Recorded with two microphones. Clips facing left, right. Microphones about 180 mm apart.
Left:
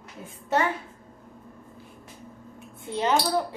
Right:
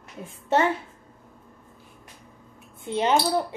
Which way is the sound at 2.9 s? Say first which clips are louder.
Right 2 dB; 20° right (ahead or behind).